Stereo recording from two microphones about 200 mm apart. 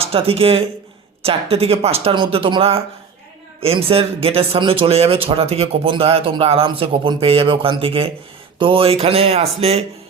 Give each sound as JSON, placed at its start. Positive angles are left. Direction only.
{"t": 0.0, "sound": "speech", "side_deg": -30}